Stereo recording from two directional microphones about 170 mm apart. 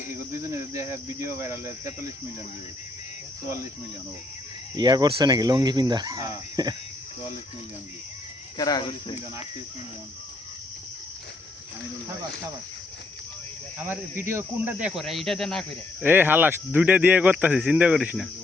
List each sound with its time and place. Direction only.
0.4 s speech: 15° right (ahead or behind)
4.8 s speech: 25° right (ahead or behind)
8.5 s speech: 25° left (ahead or behind)
13.7 s speech: 10° right (ahead or behind)
16.0 s speech: 10° right (ahead or behind)